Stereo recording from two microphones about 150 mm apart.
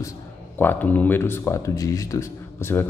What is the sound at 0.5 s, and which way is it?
Speech, 10° left (ahead or behind).